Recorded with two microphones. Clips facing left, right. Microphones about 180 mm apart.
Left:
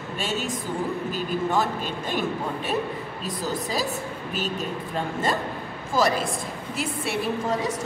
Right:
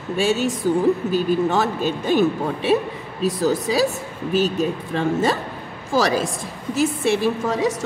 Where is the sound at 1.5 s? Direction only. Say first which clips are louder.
Right 4 dB; 75° right (ahead or behind).